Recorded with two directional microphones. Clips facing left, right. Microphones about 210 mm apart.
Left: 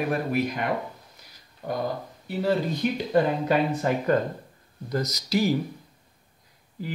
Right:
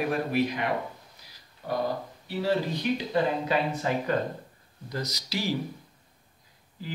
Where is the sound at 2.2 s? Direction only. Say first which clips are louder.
Left 3 dB; 50° left (ahead or behind).